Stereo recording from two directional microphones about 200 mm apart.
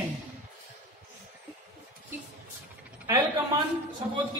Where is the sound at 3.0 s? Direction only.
15° right (ahead or behind).